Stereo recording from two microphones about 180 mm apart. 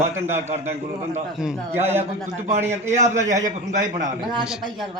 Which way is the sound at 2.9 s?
40° right (ahead or behind).